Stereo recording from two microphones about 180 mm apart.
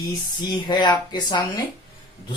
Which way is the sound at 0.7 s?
25° left (ahead or behind).